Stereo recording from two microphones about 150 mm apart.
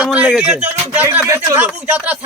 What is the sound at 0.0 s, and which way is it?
A man's voice, 5° right (ahead or behind).